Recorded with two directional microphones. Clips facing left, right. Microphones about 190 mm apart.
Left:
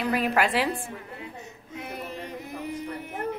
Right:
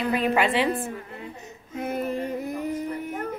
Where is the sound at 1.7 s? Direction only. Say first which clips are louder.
Right 9 dB; 50° right (ahead or behind).